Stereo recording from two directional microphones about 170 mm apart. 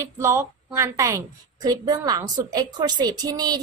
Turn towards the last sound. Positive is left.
turn(degrees=-25)  # may be behind; listen again after turning